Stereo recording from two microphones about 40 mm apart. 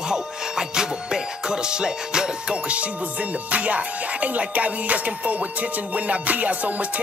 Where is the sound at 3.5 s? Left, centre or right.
Right.